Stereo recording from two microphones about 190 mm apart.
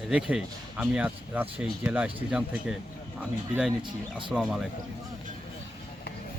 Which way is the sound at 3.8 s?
25° right (ahead or behind).